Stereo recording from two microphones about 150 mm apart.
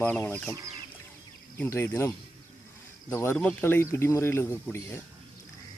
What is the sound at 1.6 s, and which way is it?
Speech, 15° left (ahead or behind).